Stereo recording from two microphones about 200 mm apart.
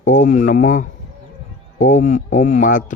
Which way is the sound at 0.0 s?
40° left (ahead or behind).